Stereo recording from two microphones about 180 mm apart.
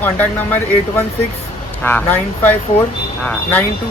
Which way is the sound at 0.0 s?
10° left (ahead or behind).